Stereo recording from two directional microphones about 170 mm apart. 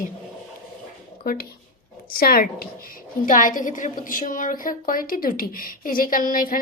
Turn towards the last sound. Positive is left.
turn(degrees=55)  # may be behind; listen again after turning